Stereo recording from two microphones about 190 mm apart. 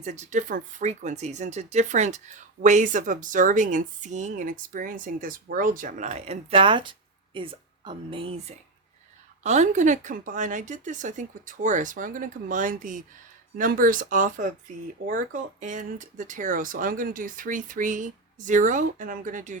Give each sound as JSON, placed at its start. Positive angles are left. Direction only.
{"t": 0.0, "sound": "speech", "side_deg": -40}